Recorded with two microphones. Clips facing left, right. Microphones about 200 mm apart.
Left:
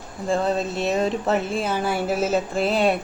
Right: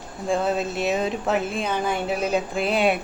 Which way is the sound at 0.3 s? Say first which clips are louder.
Left 1 dB; centre (ahead or behind).